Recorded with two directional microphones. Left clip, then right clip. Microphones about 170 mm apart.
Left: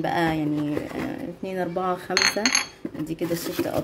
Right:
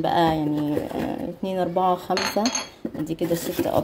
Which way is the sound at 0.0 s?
Centre (ahead or behind).